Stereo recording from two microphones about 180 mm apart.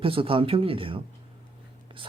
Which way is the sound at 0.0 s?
30° right (ahead or behind).